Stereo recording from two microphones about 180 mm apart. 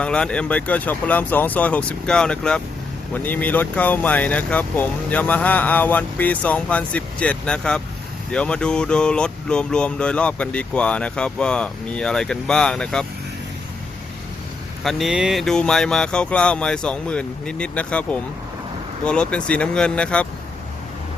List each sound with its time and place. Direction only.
0.0 s speech: 5° left (ahead or behind)
14.8 s speech: centre (ahead or behind)